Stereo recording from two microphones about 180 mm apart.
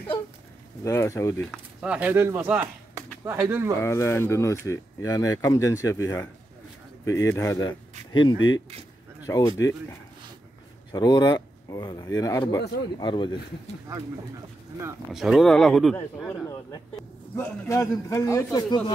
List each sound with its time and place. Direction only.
0.8 s speech: 15° left (ahead or behind)
1.5 s speech: 5° right (ahead or behind)
3.8 s speech: 15° left (ahead or behind)
8.4 s speech: 90° left
9.2 s speech: 20° left (ahead or behind)
15.1 s speech: centre (ahead or behind)
17.4 s speech: 15° left (ahead or behind)